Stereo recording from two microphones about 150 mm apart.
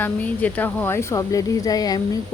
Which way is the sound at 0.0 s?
10° left (ahead or behind).